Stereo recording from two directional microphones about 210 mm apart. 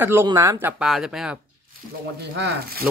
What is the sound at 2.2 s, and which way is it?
Speech, 50° right (ahead or behind).